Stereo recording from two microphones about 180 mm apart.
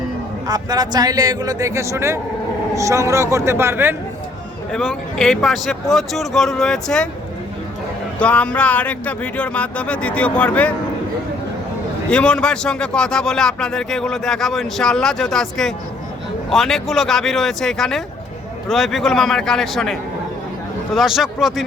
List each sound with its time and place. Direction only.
0.4 s a man's voice: 20° right (ahead or behind)
4.7 s speech: 5° left (ahead or behind)
8.2 s speech: 5° left (ahead or behind)
12.1 s speech: 5° left (ahead or behind)